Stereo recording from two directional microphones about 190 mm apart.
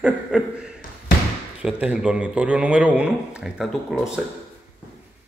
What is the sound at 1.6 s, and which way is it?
Speech, 5° right (ahead or behind).